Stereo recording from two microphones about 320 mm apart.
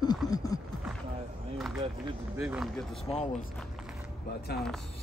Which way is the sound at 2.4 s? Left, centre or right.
Centre.